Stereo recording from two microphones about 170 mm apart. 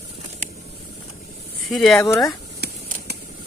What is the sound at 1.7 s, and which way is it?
Speech, centre (ahead or behind).